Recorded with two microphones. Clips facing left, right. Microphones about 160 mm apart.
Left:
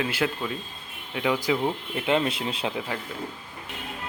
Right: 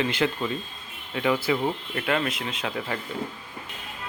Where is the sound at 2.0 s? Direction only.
20° left (ahead or behind).